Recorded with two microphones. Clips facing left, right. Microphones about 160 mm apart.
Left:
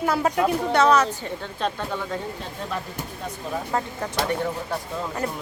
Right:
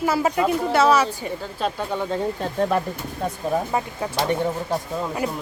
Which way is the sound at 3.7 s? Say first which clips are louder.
Right 2 dB; 15° right (ahead or behind).